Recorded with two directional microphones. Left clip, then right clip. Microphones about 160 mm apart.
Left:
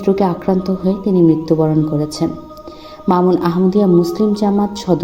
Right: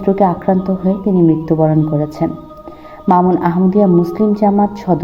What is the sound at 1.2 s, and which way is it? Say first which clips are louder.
Speech: even; 40° left (ahead or behind).